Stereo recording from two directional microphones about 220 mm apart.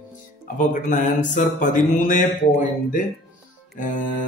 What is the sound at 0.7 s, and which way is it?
A man's voice, 35° left (ahead or behind).